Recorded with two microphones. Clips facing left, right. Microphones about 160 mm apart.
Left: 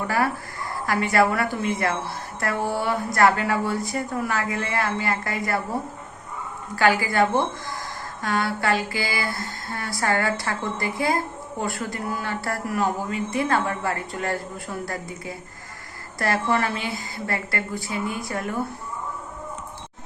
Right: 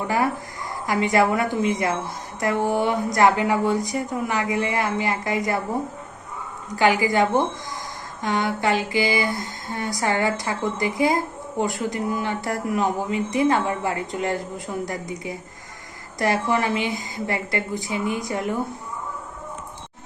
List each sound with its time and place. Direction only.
0.9 s a woman's voice: 20° right (ahead or behind)
6.7 s a woman's voice: 20° right (ahead or behind)